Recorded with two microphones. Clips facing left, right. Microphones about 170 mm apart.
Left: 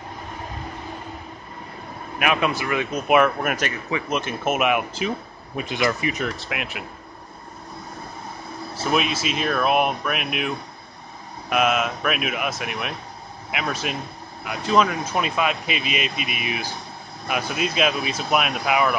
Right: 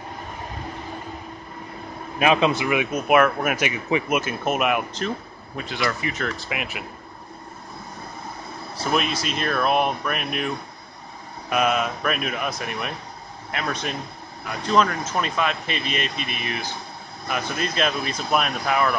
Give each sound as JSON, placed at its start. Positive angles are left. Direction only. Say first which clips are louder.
{"t": 2.1, "sound": "a man's voice", "louder": "right 3 dB", "side_deg": -25}
{"t": 2.9, "sound": "speech", "louder": "left 1 dB", "side_deg": 0}
{"t": 5.6, "sound": "speech", "louder": "left 3 dB", "side_deg": 20}
{"t": 6.2, "sound": "speech", "louder": "even", "side_deg": 0}
{"t": 8.7, "sound": "speech", "louder": "left 1 dB", "side_deg": 5}